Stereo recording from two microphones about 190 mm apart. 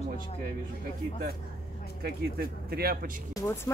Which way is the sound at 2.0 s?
55° right (ahead or behind).